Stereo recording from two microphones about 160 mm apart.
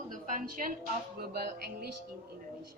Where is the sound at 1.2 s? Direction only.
75° right (ahead or behind).